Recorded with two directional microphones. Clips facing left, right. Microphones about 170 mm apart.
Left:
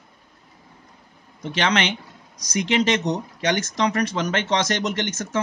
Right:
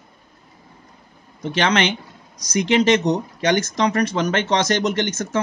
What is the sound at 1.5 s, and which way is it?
Speech, 45° right (ahead or behind).